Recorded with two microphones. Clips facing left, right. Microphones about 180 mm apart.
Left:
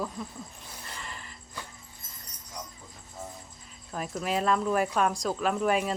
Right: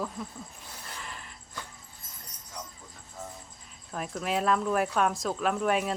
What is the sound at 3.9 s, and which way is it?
Speech, centre (ahead or behind).